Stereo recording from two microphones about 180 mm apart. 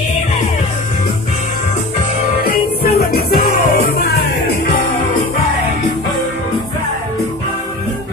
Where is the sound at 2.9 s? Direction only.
60° left (ahead or behind).